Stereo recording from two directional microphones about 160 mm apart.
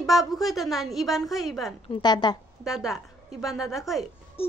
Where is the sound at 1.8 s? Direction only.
30° left (ahead or behind).